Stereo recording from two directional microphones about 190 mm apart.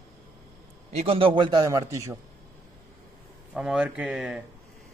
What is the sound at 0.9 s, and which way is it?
A man's voice, 30° right (ahead or behind).